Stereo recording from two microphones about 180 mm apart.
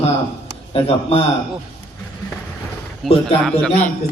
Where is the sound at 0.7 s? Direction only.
35° left (ahead or behind).